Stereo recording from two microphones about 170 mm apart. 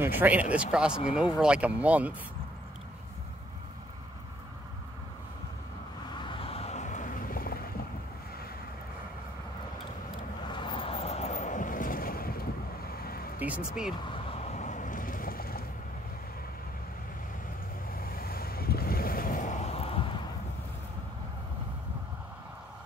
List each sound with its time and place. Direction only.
0.0 s speech: 10° right (ahead or behind)
6.2 s vehicle: 30° left (ahead or behind); by 7.5 s 55° left (ahead or behind)
10.5 s boat: 30° left (ahead or behind); by 12.4 s 60° left (ahead or behind)
13.0 s vehicle: 60° left (ahead or behind)
13.4 s speech: 5° right (ahead or behind)
14.1 s vehicle: 40° left (ahead or behind); by 15.6 s 60° left (ahead or behind)
17.9 s vehicle: 60° left (ahead or behind); by 20.0 s 35° left (ahead or behind)